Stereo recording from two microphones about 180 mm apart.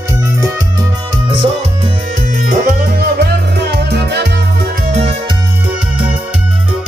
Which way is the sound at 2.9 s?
65° right (ahead or behind).